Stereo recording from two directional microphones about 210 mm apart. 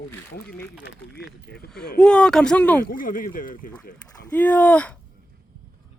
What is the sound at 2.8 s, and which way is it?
Speech, 40° left (ahead or behind).